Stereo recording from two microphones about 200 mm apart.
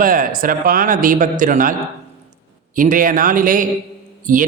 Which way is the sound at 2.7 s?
40° right (ahead or behind).